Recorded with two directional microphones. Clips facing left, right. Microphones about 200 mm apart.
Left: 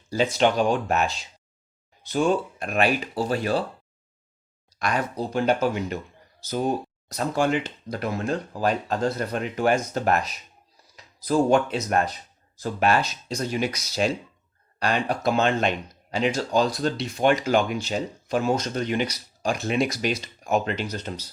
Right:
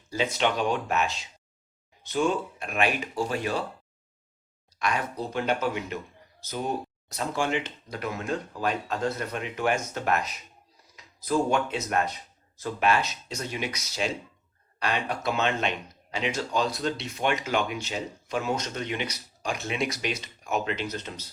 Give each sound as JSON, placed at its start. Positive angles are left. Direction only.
{"t": 0.1, "sound": "speech", "side_deg": 35}
{"t": 4.8, "sound": "speech", "side_deg": 35}
{"t": 7.3, "sound": "speech", "side_deg": 40}